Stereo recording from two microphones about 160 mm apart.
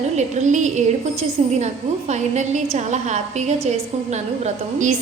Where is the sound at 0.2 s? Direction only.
50° right (ahead or behind).